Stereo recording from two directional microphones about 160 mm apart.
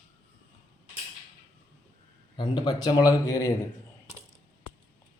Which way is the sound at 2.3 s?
30° left (ahead or behind).